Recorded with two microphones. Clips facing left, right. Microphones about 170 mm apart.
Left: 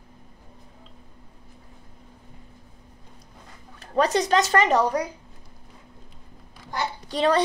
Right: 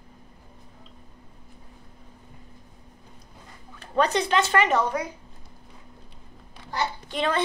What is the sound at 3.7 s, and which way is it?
A woman's voice, 35° left (ahead or behind).